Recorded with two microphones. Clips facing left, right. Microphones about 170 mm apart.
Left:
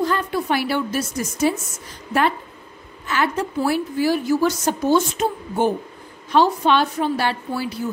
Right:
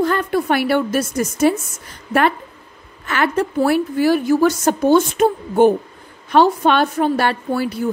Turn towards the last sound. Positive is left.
turn(degrees=-55)  # may be behind; listen again after turning